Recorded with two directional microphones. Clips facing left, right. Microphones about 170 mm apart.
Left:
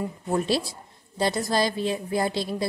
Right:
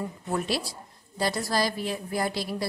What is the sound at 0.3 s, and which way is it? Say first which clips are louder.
A woman's voice: left 4 dB; 25° left (ahead or behind).